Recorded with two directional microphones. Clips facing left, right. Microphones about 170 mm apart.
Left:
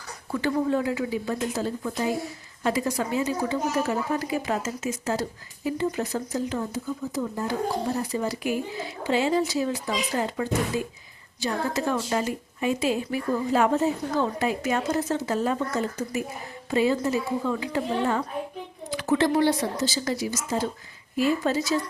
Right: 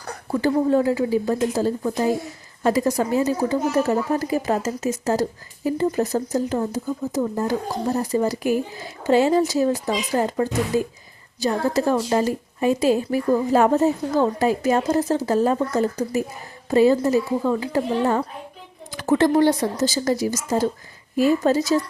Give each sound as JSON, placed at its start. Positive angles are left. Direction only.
{"t": 0.3, "sound": "a woman's voice", "side_deg": -40}